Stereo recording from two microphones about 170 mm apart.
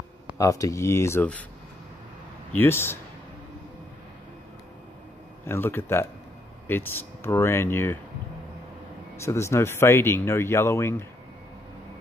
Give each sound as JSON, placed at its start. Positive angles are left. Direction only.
{"t": 0.4, "sound": "speech", "side_deg": 20}
{"t": 2.5, "sound": "speech", "side_deg": 15}
{"t": 5.5, "sound": "speech", "side_deg": 15}
{"t": 9.2, "sound": "speech", "side_deg": 15}